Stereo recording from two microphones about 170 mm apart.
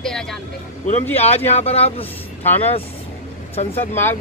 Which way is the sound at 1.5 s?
40° left (ahead or behind).